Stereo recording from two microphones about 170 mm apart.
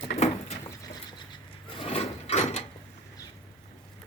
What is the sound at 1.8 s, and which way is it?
Wood, 35° left (ahead or behind).